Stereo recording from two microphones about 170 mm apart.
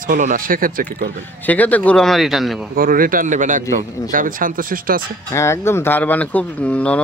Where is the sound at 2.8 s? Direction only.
55° right (ahead or behind).